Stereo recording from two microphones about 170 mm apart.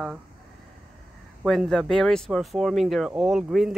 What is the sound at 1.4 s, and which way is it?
Speech, centre (ahead or behind).